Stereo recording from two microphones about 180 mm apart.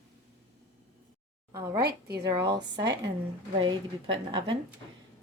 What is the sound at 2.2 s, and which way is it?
Speech, 20° right (ahead or behind).